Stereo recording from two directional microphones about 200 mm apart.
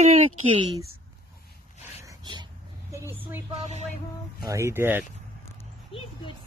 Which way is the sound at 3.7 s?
35° right (ahead or behind).